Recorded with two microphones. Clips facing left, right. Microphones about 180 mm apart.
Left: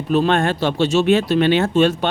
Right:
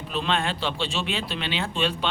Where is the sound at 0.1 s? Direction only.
45° left (ahead or behind).